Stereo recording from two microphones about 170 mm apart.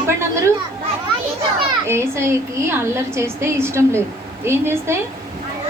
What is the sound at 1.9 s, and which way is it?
A woman's voice, 15° right (ahead or behind).